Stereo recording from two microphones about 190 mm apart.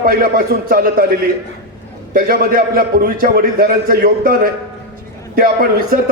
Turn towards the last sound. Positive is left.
turn(degrees=-50)  # may be behind; listen again after turning